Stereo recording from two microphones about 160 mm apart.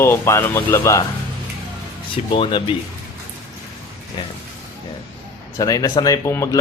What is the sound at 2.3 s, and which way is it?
Speech, 30° left (ahead or behind).